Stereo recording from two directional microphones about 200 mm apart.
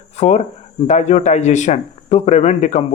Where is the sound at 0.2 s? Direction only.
35° left (ahead or behind).